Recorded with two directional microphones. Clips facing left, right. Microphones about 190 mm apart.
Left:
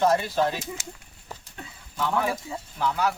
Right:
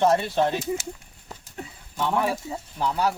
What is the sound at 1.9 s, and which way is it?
Speech, 30° right (ahead or behind).